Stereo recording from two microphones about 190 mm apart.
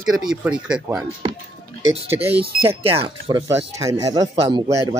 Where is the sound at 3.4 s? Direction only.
15° right (ahead or behind).